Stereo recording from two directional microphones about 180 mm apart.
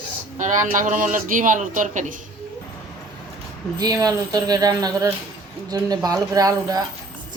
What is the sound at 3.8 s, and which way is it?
Speech, 20° right (ahead or behind).